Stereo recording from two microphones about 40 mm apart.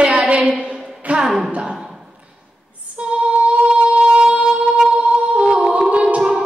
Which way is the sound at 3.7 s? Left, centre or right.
Right.